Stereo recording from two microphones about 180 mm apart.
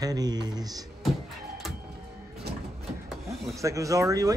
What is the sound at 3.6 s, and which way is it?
Speech, 20° right (ahead or behind).